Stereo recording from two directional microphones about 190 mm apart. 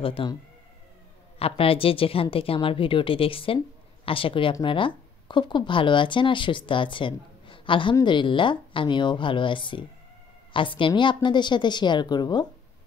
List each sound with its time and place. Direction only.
0.0 s a woman's voice: 25° left (ahead or behind)
1.4 s a woman's voice: 30° left (ahead or behind)